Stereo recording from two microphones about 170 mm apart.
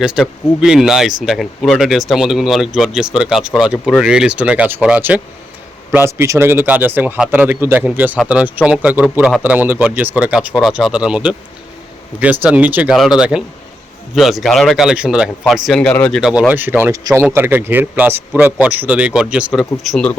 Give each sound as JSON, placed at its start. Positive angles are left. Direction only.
{"t": 0.0, "sound": "a man's voice", "side_deg": -5}